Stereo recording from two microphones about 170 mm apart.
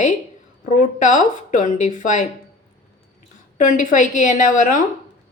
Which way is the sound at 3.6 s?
50° left (ahead or behind).